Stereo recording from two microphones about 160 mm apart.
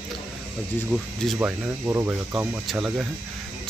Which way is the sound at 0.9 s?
Centre (ahead or behind).